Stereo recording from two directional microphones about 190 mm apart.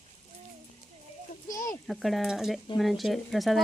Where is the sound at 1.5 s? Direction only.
15° left (ahead or behind).